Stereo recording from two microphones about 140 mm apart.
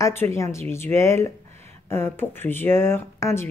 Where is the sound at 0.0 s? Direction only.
20° left (ahead or behind).